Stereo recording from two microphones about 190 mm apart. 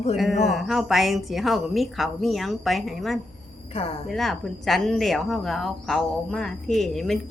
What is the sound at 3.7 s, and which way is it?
Speech, 30° left (ahead or behind).